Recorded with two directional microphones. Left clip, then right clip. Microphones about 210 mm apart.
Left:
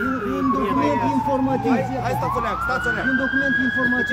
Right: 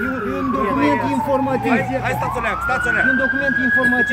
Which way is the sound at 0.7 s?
10° right (ahead or behind).